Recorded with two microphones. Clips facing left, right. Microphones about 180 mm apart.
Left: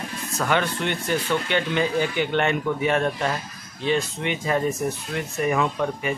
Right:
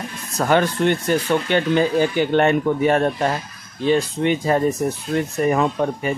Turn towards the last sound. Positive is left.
turn(degrees=-40)  # may be behind; listen again after turning